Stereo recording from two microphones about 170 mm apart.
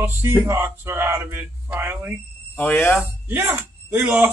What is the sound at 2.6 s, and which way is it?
Speech, 10° left (ahead or behind).